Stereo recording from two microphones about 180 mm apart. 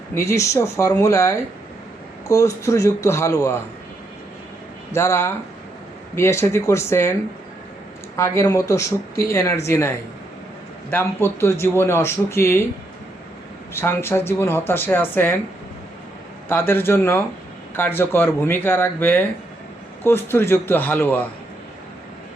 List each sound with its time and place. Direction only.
0.1 s speech: 15° left (ahead or behind)
4.9 s speech: 15° left (ahead or behind)
10.9 s speech: 15° left (ahead or behind)
13.7 s speech: 15° left (ahead or behind)
16.5 s speech: 10° left (ahead or behind)